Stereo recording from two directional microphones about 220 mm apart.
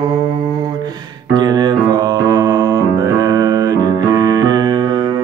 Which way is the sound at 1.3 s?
20° right (ahead or behind).